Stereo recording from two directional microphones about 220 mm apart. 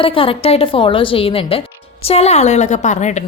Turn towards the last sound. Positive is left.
turn(degrees=30)  # may be behind; listen again after turning